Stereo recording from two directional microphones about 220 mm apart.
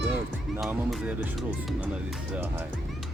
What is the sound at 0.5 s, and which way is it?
Speech, 10° right (ahead or behind).